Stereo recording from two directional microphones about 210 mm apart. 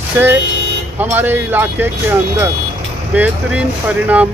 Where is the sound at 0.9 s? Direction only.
10° right (ahead or behind).